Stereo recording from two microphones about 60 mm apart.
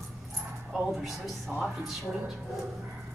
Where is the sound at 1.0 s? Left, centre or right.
Centre.